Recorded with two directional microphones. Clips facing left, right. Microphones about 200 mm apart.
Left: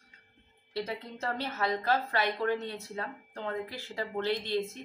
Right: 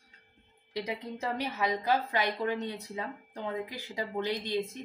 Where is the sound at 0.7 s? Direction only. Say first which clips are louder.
Even; 15° right (ahead or behind).